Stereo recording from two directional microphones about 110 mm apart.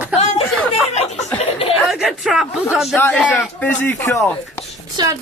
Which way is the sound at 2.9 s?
20° left (ahead or behind).